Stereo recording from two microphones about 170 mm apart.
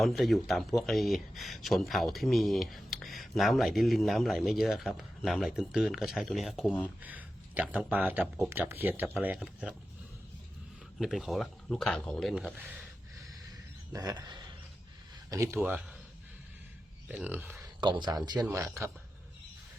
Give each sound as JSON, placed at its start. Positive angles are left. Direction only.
{"t": 0.0, "sound": "speech", "side_deg": 0}
{"t": 11.0, "sound": "speech", "side_deg": 0}
{"t": 12.3, "sound": "speech", "side_deg": -5}
{"t": 13.9, "sound": "speech", "side_deg": -20}
{"t": 17.1, "sound": "speech", "side_deg": -10}
{"t": 17.7, "sound": "speech", "side_deg": -25}